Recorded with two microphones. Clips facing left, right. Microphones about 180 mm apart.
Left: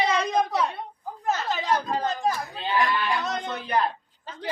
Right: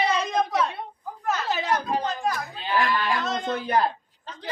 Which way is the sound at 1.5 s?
5° right (ahead or behind).